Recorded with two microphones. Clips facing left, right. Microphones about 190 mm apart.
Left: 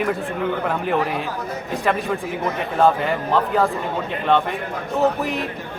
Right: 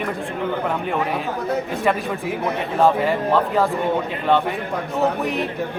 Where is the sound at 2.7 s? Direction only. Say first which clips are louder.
Right 1 dB; centre (ahead or behind).